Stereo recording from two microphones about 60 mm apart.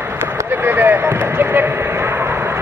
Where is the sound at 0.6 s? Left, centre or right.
Right.